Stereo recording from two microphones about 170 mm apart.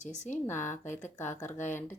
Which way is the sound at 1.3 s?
15° left (ahead or behind).